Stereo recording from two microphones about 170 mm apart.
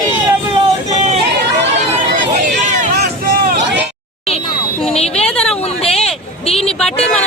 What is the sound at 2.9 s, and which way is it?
Hubbub, 65° right (ahead or behind).